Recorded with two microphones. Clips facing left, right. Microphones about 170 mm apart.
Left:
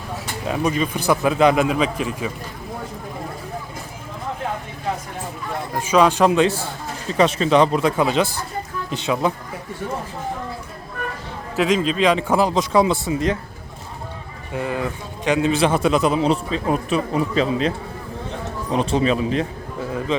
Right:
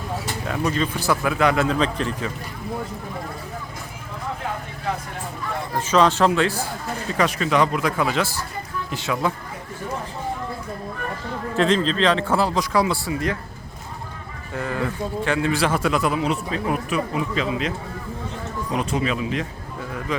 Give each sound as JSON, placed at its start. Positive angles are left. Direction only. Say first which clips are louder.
{"t": 0.4, "sound": "a man's voice", "louder": "left 3 dB", "side_deg": 15}
{"t": 5.7, "sound": "a man's voice", "louder": "left 2 dB", "side_deg": 10}
{"t": 11.5, "sound": "a man's voice", "louder": "left 1 dB", "side_deg": 10}
{"t": 14.5, "sound": "a man's voice", "louder": "left 2 dB", "side_deg": 15}